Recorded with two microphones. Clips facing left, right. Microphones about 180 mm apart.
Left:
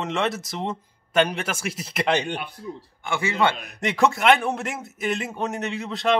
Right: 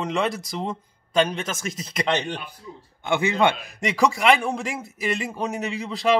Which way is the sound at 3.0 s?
20° right (ahead or behind).